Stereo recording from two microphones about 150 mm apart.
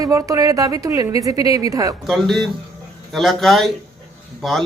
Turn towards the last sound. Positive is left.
turn(degrees=5)  # may be behind; listen again after turning